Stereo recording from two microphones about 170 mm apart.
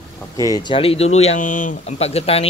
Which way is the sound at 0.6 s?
30° left (ahead or behind).